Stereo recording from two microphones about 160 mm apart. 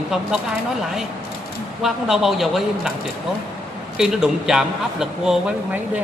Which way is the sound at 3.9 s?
5° right (ahead or behind).